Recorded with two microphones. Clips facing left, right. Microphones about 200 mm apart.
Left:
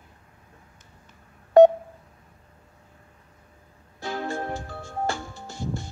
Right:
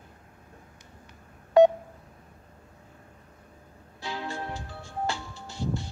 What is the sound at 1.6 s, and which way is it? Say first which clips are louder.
Telephone dialing: left 4 dB; 50° left (ahead or behind).